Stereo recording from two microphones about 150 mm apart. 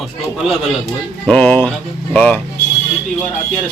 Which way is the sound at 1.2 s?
10° left (ahead or behind).